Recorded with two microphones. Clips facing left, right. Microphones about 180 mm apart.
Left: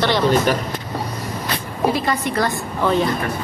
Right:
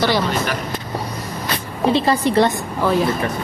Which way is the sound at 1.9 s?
30° right (ahead or behind).